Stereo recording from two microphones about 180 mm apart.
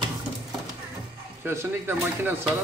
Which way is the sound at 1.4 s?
15° right (ahead or behind).